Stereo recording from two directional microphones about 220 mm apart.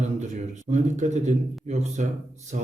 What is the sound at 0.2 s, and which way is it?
A man's voice, 30° right (ahead or behind).